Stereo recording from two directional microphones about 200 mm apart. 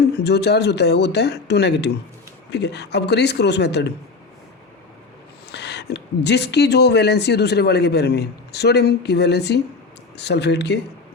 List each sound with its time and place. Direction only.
0.0 s speech: 55° left (ahead or behind)
5.5 s speech: 55° left (ahead or behind)